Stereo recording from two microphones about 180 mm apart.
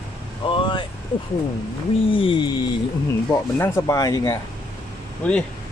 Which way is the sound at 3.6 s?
20° left (ahead or behind).